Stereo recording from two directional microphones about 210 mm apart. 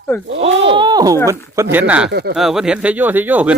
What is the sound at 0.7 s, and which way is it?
Speech, 20° right (ahead or behind).